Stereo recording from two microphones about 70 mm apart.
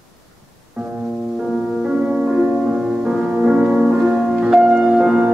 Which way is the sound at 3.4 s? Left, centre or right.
Centre.